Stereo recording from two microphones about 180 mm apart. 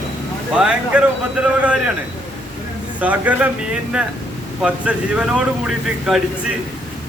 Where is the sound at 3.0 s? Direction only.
10° right (ahead or behind).